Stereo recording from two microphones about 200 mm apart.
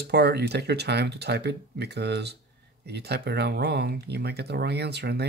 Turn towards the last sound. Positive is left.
turn(degrees=-55)  # may be behind; listen again after turning